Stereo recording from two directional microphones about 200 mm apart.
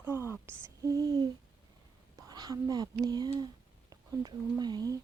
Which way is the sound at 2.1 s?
20° right (ahead or behind).